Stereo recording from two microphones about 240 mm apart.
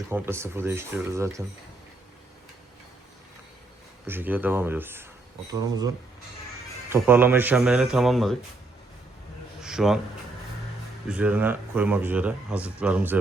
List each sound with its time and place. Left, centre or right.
0.1 s speech: centre
4.0 s speech: centre
6.9 s speech: centre
9.6 s speech: centre
11.1 s speech: centre